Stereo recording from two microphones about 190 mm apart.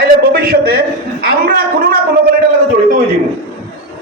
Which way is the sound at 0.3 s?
55° right (ahead or behind).